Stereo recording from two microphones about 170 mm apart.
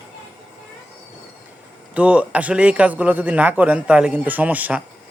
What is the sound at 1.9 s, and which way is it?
A man's voice, 10° right (ahead or behind).